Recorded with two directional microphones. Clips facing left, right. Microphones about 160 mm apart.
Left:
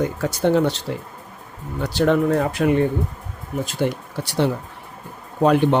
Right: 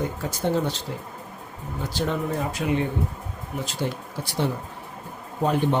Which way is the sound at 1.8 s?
70° left (ahead or behind).